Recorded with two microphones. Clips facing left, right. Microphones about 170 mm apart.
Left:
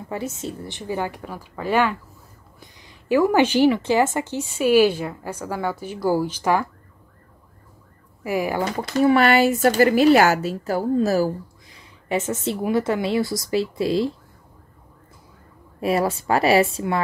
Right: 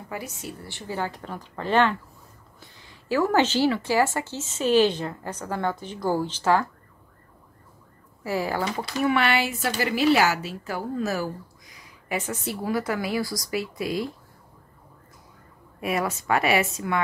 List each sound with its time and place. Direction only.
0.1 s a woman's voice: 25° left (ahead or behind)
8.2 s speech: 15° left (ahead or behind)
9.0 s a woman's voice: 40° left (ahead or behind)
15.8 s a woman's voice: 30° left (ahead or behind)